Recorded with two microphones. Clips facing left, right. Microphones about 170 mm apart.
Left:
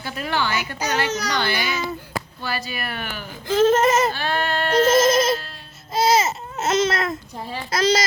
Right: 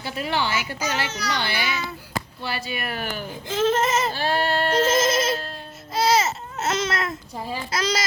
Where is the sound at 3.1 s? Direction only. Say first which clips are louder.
Right 3 dB; 15° right (ahead or behind).